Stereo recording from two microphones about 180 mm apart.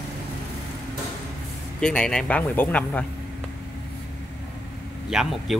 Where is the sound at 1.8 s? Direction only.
5° left (ahead or behind).